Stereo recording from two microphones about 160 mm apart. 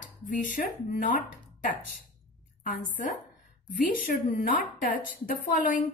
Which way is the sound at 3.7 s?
55° left (ahead or behind).